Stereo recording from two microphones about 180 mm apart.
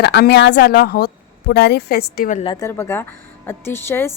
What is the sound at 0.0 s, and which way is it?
Speech, 65° left (ahead or behind).